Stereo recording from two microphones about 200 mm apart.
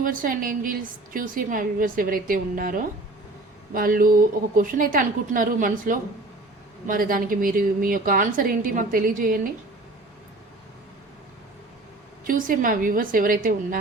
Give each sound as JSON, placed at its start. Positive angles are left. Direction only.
{"t": 0.0, "sound": "a woman's voice", "side_deg": -45}
{"t": 12.2, "sound": "a woman's voice", "side_deg": -45}